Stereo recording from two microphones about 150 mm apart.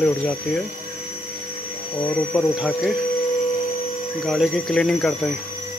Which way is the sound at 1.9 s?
30° left (ahead or behind).